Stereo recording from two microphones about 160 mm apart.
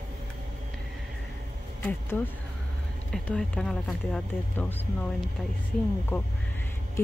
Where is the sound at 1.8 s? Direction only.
10° left (ahead or behind).